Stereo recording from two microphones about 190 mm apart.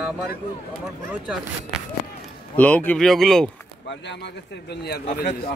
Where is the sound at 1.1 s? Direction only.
Centre (ahead or behind).